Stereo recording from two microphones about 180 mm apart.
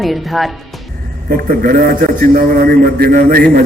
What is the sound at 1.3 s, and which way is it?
A man's voice, 50° right (ahead or behind).